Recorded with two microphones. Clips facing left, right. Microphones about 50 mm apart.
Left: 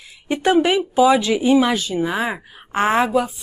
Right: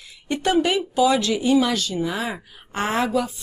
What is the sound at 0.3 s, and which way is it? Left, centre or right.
Speech, centre.